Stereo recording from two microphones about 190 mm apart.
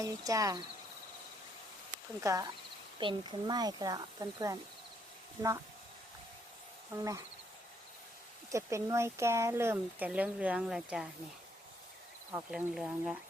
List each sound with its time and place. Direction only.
0.0 s speech: 15° right (ahead or behind)
2.2 s speech: 15° right (ahead or behind)
6.9 s speech: 15° right (ahead or behind)
8.5 s speech: 15° right (ahead or behind)
12.3 s speech: 5° right (ahead or behind)